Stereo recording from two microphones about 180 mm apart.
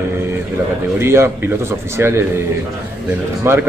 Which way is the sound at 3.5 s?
15° right (ahead or behind).